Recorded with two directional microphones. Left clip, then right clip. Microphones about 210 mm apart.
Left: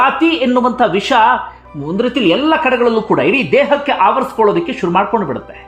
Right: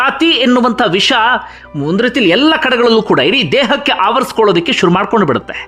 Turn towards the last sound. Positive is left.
turn(degrees=-30)  # may be behind; listen again after turning